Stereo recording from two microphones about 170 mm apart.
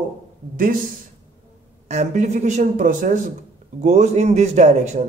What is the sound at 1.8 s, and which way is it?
A man's voice, 45° right (ahead or behind).